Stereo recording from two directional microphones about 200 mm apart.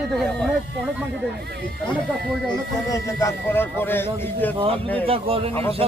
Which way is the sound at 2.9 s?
15° left (ahead or behind).